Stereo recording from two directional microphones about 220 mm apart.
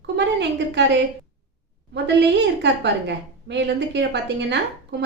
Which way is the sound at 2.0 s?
50° right (ahead or behind).